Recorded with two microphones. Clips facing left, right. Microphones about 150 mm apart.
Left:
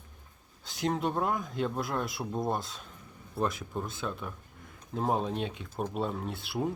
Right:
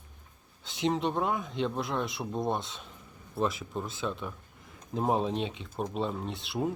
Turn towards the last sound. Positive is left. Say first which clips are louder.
# right 1 dB
turn(degrees=0)  # may be behind; listen again after turning